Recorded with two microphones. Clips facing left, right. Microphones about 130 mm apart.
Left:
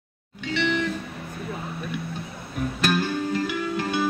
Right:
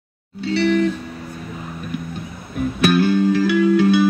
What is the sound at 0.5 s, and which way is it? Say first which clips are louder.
Music: right 8 dB; 35° right (ahead or behind).